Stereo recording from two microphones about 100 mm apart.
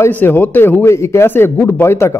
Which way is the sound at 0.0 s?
20° left (ahead or behind).